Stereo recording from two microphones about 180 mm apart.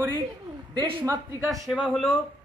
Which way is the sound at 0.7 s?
30° right (ahead or behind).